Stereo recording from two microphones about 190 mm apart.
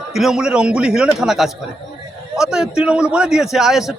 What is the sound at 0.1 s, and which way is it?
A man's voice, centre (ahead or behind).